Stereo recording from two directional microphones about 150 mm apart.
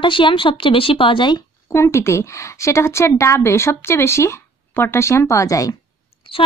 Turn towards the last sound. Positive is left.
turn(degrees=35)  # may be behind; listen again after turning